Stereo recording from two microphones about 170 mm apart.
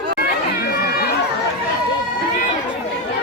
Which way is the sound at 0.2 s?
60° left (ahead or behind).